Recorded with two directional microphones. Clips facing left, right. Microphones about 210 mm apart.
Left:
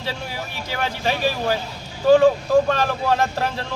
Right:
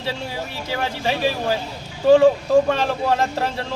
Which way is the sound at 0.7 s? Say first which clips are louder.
Even; 25° right (ahead or behind).